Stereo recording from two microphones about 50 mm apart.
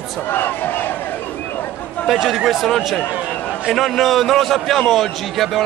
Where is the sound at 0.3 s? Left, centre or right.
Left.